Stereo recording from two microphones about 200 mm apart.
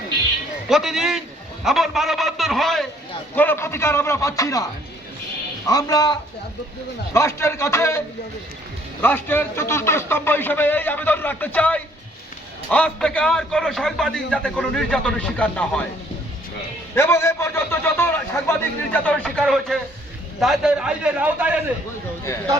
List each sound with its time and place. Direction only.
0.7 s a man's voice: centre (ahead or behind); by 4.6 s 15° left (ahead or behind)
5.6 s a man's voice: 20° left (ahead or behind)
16.9 s a man's voice: 15° left (ahead or behind); by 21.6 s 5° right (ahead or behind)